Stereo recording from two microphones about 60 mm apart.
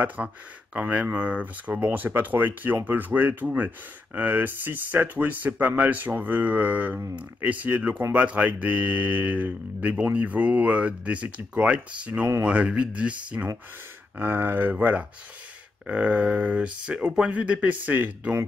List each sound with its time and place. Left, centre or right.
0.0 s speech: right
14.1 s speech: right